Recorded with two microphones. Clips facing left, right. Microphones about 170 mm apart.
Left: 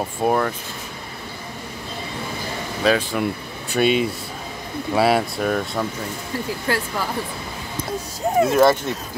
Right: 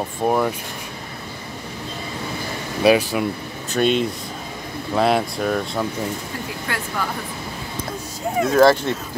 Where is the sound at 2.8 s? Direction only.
10° right (ahead or behind).